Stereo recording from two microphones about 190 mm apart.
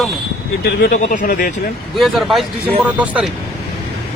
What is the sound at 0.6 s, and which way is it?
Speech, 50° left (ahead or behind).